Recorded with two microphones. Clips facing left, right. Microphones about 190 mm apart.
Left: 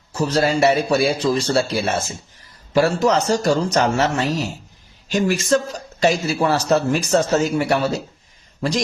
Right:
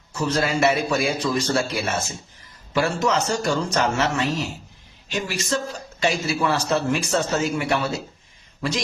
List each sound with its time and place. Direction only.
0.1 s a man's voice: 35° left (ahead or behind)